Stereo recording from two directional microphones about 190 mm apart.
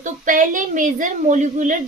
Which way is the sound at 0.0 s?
45° right (ahead or behind).